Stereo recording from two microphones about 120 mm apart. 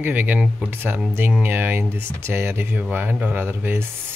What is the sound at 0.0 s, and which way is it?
Speech, 15° right (ahead or behind).